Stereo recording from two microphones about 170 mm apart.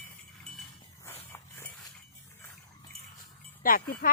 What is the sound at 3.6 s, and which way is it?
Speech, 55° left (ahead or behind).